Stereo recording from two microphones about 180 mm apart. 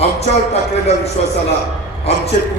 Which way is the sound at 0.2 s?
35° left (ahead or behind).